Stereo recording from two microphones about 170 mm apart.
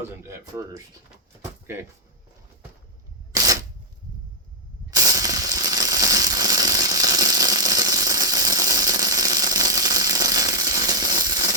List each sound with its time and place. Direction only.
0.2 s speech: 15° right (ahead or behind)
1.6 s speech: 15° right (ahead or behind)
3.3 s single-lens reflex camera: 20° right (ahead or behind)
4.9 s a sound: 20° right (ahead or behind)